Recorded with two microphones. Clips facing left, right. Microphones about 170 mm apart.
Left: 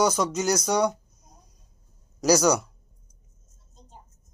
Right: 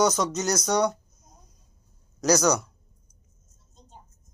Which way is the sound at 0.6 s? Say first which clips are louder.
Even; 5° left (ahead or behind).